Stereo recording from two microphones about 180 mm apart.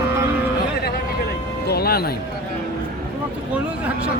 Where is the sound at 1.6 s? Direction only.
60° left (ahead or behind).